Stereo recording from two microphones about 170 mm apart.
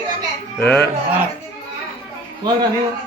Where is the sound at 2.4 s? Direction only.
25° right (ahead or behind).